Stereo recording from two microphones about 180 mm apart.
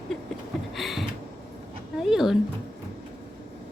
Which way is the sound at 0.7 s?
Centre (ahead or behind).